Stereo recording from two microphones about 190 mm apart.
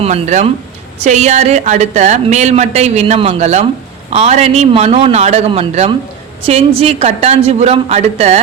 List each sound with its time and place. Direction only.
0.0 s a woman's voice: 35° right (ahead or behind)